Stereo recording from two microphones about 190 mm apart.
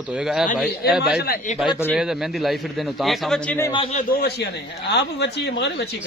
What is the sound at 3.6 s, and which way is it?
Speech, 25° left (ahead or behind).